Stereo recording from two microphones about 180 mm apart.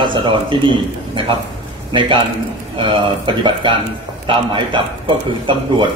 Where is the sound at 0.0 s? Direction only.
25° right (ahead or behind).